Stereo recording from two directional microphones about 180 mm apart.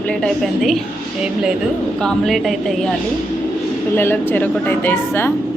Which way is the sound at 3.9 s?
10° left (ahead or behind).